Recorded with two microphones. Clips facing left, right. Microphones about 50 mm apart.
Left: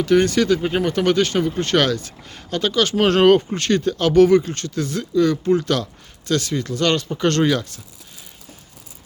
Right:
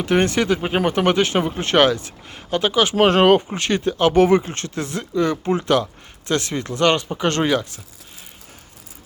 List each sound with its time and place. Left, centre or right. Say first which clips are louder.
0.0 s speech: left 2 dB; right